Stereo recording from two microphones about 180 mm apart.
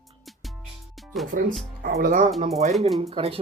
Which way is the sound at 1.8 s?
55° right (ahead or behind).